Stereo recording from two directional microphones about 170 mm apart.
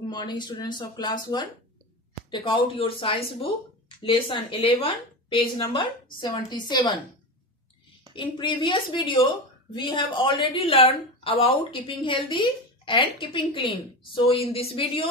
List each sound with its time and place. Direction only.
0.1 s a woman's voice: 25° left (ahead or behind)
8.1 s a woman's voice: 30° left (ahead or behind)